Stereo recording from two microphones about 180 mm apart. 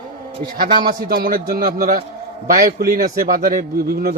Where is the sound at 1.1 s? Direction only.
55° right (ahead or behind).